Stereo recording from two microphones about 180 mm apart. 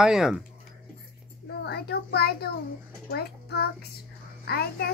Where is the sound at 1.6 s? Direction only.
65° left (ahead or behind).